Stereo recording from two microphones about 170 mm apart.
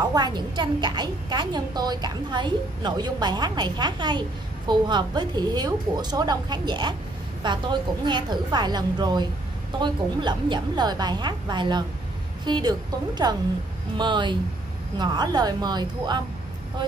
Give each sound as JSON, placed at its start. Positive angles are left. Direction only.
{"t": 0.0, "sound": "a woman's voice", "side_deg": -25}